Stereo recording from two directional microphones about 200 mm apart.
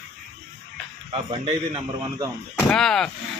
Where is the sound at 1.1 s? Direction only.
25° right (ahead or behind).